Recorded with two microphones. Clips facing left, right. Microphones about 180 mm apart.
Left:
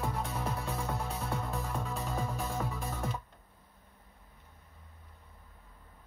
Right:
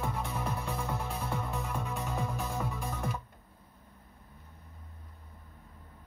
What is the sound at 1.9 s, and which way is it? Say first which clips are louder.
Music: even; 15° right (ahead or behind).